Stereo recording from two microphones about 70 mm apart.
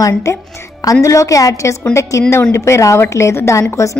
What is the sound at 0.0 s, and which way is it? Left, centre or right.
A woman's voice, left.